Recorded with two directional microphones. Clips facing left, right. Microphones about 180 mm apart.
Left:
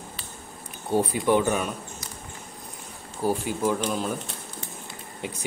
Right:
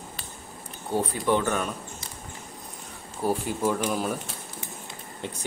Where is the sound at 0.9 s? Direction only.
15° left (ahead or behind).